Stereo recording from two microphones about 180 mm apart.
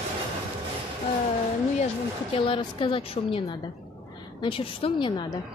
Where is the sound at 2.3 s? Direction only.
30° left (ahead or behind).